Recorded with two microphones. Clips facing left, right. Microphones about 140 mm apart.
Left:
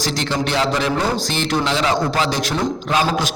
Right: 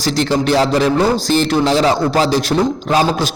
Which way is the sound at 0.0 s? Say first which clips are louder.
Right 6 dB; 35° right (ahead or behind).